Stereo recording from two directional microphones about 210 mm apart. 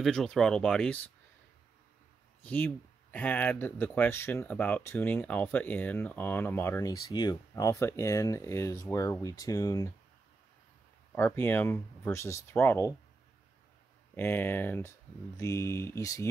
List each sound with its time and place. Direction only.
0.0 s speech: centre (ahead or behind)
2.4 s speech: 5° left (ahead or behind)
11.1 s speech: 10° left (ahead or behind)
14.1 s speech: 10° left (ahead or behind)